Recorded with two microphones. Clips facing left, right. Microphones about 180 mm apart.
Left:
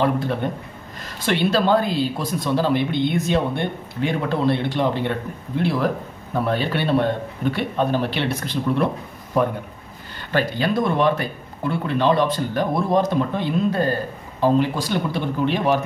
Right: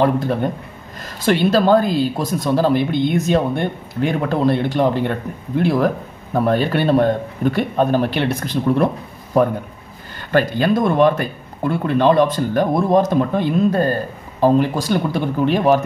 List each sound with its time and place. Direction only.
0.0 s a man's voice: 40° right (ahead or behind)